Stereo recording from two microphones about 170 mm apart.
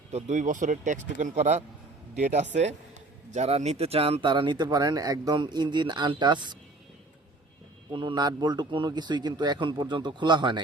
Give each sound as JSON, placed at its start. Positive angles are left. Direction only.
{"t": 0.1, "sound": "speech", "side_deg": -45}
{"t": 7.9, "sound": "speech", "side_deg": -25}